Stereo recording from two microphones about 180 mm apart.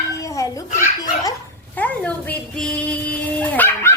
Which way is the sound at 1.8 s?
10° left (ahead or behind).